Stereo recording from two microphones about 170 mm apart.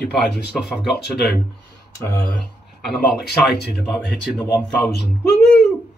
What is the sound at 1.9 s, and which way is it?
Speech, 15° left (ahead or behind).